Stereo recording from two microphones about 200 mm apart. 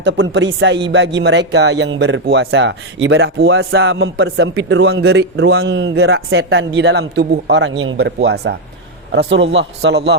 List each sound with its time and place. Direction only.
0.0 s a man's voice: 65° right (ahead or behind)